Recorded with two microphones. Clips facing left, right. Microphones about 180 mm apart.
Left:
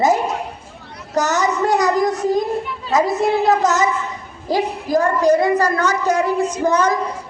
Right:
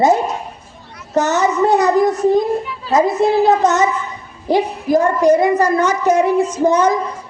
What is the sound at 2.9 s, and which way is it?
A woman's voice, 30° right (ahead or behind).